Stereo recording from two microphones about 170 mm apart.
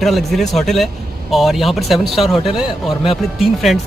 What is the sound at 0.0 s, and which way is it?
Speech, centre (ahead or behind).